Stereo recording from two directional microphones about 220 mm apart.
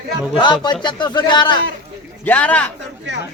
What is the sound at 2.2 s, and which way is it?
Speech, 5° left (ahead or behind).